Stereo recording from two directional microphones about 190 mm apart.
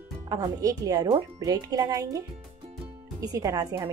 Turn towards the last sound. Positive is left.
turn(degrees=-20)  # may be behind; listen again after turning